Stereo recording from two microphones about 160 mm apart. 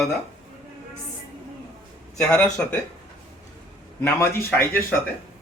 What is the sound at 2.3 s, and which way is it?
Speech, 10° left (ahead or behind).